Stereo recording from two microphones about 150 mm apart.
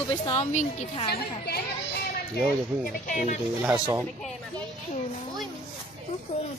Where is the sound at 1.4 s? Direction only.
90° left.